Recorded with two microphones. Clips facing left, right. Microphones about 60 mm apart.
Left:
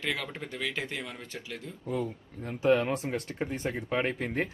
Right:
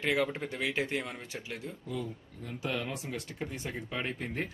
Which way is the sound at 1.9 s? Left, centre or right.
Left.